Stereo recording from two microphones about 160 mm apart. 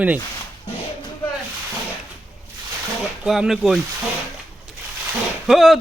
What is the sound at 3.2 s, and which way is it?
Speech, 5° right (ahead or behind).